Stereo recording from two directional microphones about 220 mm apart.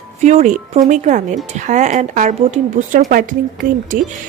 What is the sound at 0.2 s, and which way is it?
A woman's voice, 30° right (ahead or behind).